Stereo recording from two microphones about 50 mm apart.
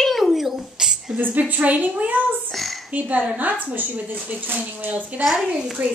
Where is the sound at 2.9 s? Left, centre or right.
Right.